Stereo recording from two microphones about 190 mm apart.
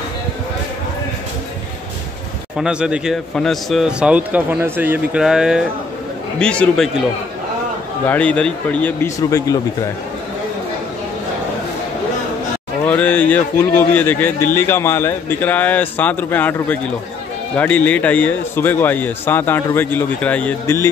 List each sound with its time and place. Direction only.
2.5 s a man's voice: 5° right (ahead or behind)
8.1 s speech: 5° left (ahead or behind)
12.8 s speech: 5° left (ahead or behind)